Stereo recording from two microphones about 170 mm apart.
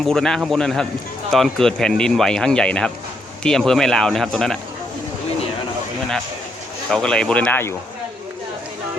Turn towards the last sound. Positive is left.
turn(degrees=15)  # may be behind; listen again after turning